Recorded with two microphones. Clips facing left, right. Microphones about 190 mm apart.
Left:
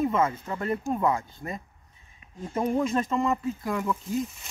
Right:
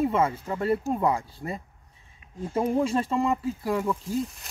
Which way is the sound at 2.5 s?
10° right (ahead or behind).